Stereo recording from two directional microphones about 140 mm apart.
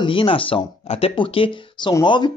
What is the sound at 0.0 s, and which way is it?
Speech, 40° left (ahead or behind).